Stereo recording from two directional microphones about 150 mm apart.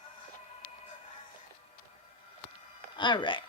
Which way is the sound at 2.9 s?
30° left (ahead or behind).